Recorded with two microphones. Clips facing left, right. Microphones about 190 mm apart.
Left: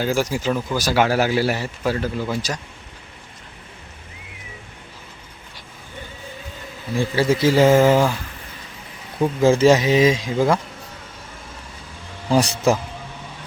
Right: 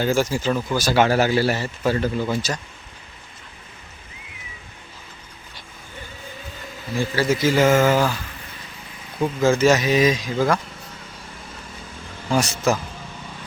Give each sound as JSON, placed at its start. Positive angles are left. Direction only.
{"t": 0.0, "sound": "speech", "side_deg": 10}
{"t": 7.2, "sound": "speech", "side_deg": 30}
{"t": 9.1, "sound": "speech", "side_deg": 25}
{"t": 12.3, "sound": "speech", "side_deg": 30}